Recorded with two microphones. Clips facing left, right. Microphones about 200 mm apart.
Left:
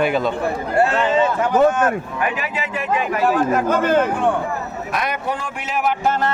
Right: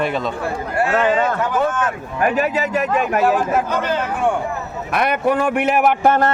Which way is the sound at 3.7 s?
50° left (ahead or behind).